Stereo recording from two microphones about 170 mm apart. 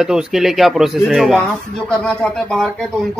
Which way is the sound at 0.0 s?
5° right (ahead or behind).